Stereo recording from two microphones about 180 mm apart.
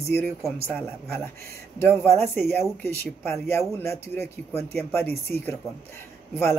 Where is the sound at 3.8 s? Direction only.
15° left (ahead or behind).